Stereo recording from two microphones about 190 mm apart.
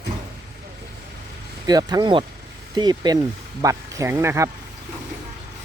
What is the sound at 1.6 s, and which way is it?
Speech, 20° right (ahead or behind).